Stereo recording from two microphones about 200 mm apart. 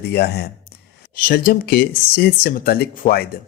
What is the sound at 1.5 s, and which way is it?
A man's voice, 50° left (ahead or behind).